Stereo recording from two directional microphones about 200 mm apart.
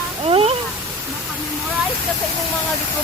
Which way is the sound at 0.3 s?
30° right (ahead or behind).